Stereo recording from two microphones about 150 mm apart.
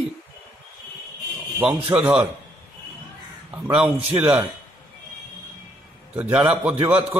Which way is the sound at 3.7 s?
10° right (ahead or behind).